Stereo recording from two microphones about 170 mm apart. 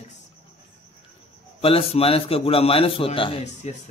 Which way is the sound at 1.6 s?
35° left (ahead or behind).